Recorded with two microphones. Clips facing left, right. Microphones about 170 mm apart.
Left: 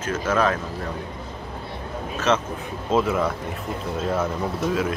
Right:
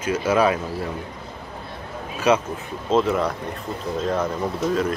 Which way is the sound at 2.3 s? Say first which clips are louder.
Right 3 dB; 10° right (ahead or behind).